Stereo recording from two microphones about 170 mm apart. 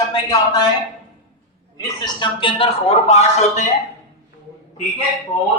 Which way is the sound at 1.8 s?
25° left (ahead or behind).